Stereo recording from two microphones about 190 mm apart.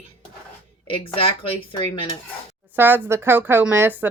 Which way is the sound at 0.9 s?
30° left (ahead or behind).